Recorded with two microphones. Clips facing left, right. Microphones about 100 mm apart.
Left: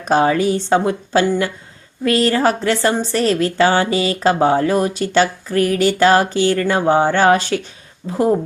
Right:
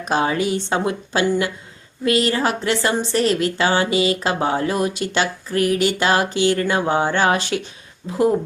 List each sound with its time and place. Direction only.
0.0 s a woman's voice: 35° left (ahead or behind)